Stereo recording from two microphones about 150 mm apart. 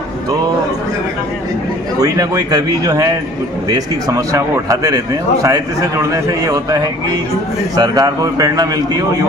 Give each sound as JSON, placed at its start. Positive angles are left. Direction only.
{"t": 2.0, "sound": "a man's voice", "side_deg": -25}